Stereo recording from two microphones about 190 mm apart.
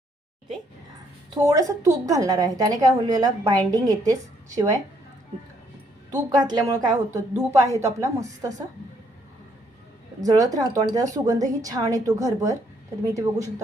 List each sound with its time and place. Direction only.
1.4 s a woman's voice: 15° right (ahead or behind)
6.1 s a woman's voice: 20° right (ahead or behind)
10.2 s a woman's voice: 20° right (ahead or behind)